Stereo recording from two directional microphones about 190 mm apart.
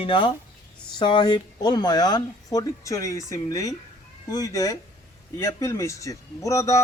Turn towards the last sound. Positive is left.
turn(degrees=15)  # may be behind; listen again after turning